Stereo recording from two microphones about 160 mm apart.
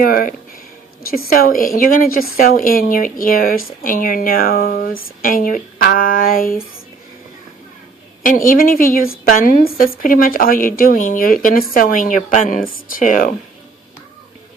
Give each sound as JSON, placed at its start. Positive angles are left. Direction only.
{"t": 0.0, "sound": "speech", "side_deg": 60}
{"t": 8.2, "sound": "speech", "side_deg": 55}